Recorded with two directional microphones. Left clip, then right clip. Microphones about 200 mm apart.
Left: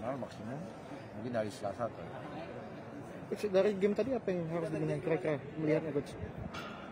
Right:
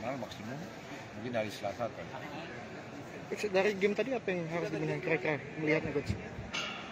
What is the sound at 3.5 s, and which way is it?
Speech, 50° left (ahead or behind).